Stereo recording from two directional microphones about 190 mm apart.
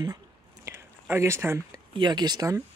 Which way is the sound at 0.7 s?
15° right (ahead or behind).